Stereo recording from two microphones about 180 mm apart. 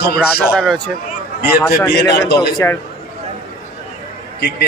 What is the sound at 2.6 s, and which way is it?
Speech, 15° left (ahead or behind).